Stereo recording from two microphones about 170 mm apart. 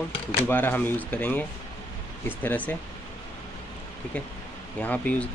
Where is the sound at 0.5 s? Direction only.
10° left (ahead or behind).